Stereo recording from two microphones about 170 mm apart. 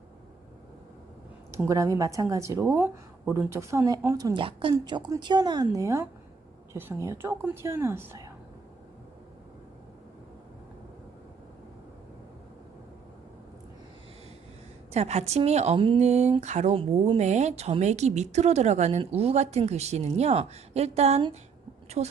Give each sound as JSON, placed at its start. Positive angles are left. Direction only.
{"t": 1.5, "sound": "a woman's voice", "side_deg": -15}
{"t": 14.9, "sound": "speech", "side_deg": -40}